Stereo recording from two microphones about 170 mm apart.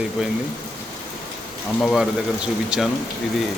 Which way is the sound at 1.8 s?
Centre (ahead or behind).